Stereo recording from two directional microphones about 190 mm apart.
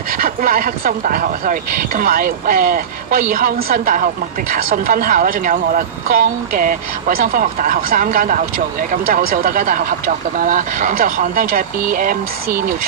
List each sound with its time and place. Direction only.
0.1 s speech: 50° right (ahead or behind)